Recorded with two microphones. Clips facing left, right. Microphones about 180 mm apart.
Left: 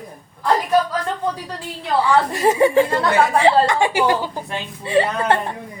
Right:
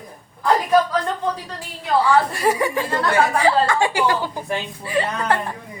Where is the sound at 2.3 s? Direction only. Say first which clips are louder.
Left 5 dB; 25° left (ahead or behind).